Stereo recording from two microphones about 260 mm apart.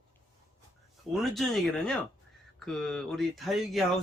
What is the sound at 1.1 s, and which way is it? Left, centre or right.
Speech, centre.